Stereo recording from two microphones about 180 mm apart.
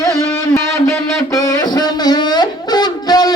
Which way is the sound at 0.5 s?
15° left (ahead or behind).